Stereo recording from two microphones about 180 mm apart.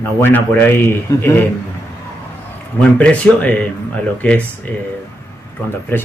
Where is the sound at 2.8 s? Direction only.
5° left (ahead or behind).